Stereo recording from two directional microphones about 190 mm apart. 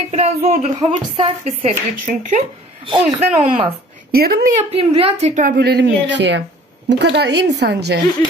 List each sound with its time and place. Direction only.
0.1 s a woman's voice: 35° right (ahead or behind)
4.1 s speech: 55° right (ahead or behind)
4.7 s speech: 30° right (ahead or behind)
5.2 s speech: 40° right (ahead or behind); by 8.0 s 60° right (ahead or behind)